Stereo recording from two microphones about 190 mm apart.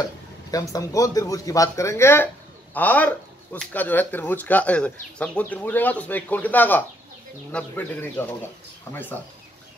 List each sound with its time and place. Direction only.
0.5 s speech: 20° left (ahead or behind)